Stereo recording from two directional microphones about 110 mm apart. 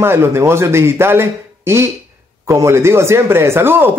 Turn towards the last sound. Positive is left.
turn(degrees=-20)  # may be behind; listen again after turning